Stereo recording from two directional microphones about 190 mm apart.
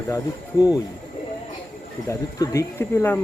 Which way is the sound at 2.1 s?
15° left (ahead or behind).